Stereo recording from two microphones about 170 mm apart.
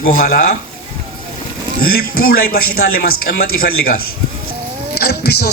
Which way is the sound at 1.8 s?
60° left (ahead or behind).